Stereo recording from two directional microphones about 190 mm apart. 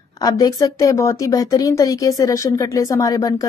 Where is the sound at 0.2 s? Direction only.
20° left (ahead or behind).